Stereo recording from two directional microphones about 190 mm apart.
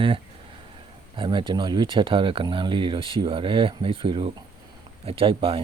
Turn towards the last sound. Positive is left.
turn(degrees=-30)  # may be behind; listen again after turning